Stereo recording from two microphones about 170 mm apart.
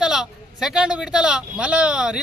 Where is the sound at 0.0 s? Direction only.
5° right (ahead or behind).